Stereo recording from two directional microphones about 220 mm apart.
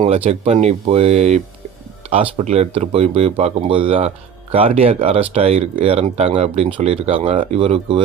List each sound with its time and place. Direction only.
0.0 s speech: 25° right (ahead or behind)